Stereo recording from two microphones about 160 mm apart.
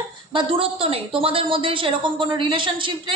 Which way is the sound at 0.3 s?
35° right (ahead or behind).